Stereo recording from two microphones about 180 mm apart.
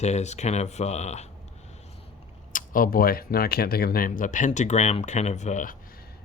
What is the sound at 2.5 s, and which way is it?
Speech, 50° left (ahead or behind).